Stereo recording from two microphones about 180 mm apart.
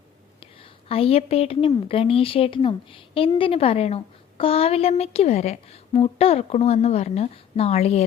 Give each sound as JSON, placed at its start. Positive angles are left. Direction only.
{"t": 0.3, "sound": "a woman's voice", "side_deg": 30}